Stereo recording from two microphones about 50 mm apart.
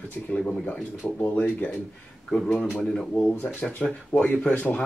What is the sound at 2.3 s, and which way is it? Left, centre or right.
Speech, centre.